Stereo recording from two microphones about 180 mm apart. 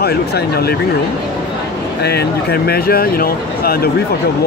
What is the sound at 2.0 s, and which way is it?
Speech, 65° left (ahead or behind).